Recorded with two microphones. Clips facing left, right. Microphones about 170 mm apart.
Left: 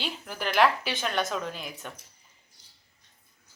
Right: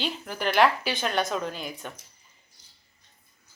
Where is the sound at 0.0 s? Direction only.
Centre (ahead or behind).